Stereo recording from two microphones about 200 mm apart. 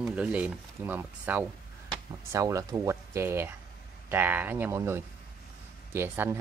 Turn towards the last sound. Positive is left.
turn(degrees=-10)  # may be behind; listen again after turning